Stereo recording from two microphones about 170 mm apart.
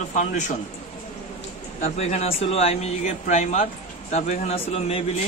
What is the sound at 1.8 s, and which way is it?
Speech, 40° left (ahead or behind).